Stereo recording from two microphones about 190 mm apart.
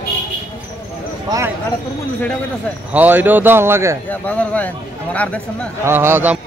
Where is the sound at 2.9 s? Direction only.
10° right (ahead or behind).